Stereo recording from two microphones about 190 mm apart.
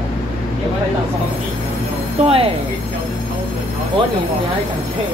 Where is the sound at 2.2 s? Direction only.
30° right (ahead or behind).